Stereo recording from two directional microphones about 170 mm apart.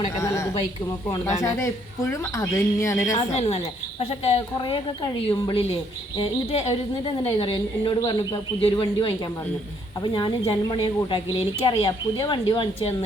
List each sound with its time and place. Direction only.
0.2 s a woman's voice: 15° left (ahead or behind)
3.2 s a woman's voice: 35° left (ahead or behind)